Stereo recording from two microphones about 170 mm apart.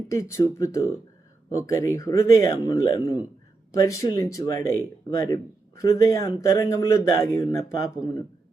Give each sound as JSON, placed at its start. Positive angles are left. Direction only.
{"t": 0.1, "sound": "speech", "side_deg": 15}